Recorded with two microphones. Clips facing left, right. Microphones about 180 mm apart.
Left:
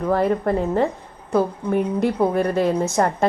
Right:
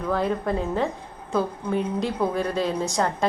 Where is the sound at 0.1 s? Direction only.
60° left (ahead or behind).